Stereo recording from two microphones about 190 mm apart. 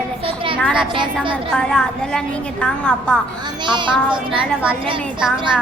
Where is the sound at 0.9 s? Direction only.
25° right (ahead or behind).